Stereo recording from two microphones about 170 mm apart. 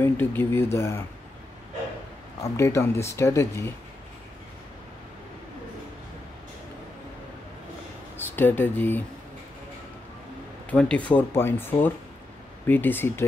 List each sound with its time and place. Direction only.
0.0 s speech: 10° left (ahead or behind)
2.5 s speech: 15° left (ahead or behind)
8.4 s speech: 10° left (ahead or behind)
10.7 s speech: 5° left (ahead or behind)